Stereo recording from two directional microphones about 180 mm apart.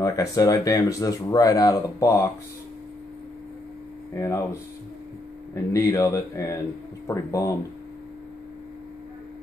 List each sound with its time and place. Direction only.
0.0 s speech: 20° left (ahead or behind)
4.1 s speech: 20° left (ahead or behind)
5.5 s speech: 15° left (ahead or behind)